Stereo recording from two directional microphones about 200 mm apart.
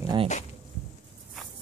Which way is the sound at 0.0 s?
20° right (ahead or behind).